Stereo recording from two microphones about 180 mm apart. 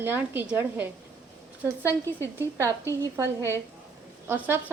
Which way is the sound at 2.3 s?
15° right (ahead or behind).